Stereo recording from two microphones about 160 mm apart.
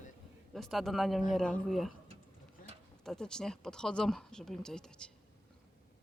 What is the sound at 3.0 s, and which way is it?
Speech, 5° left (ahead or behind).